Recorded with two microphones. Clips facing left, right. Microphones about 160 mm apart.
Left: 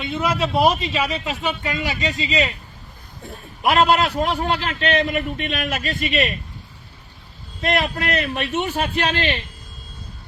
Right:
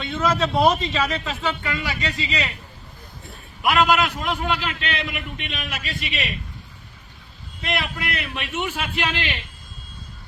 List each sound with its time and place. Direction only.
0.0 s a man's voice: 10° left (ahead or behind)
3.6 s a man's voice: 30° left (ahead or behind)
7.6 s a man's voice: 45° left (ahead or behind)